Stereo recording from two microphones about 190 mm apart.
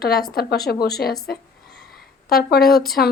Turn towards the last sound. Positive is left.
turn(degrees=55)  # may be behind; listen again after turning